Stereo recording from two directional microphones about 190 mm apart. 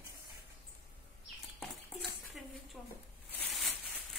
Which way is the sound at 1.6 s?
Centre (ahead or behind).